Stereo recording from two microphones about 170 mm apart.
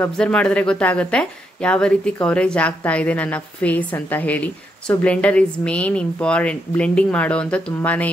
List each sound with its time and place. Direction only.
0.0 s speech: 5° left (ahead or behind)